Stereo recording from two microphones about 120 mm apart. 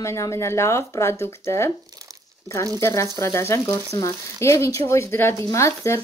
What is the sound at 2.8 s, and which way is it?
Speech, 25° left (ahead or behind).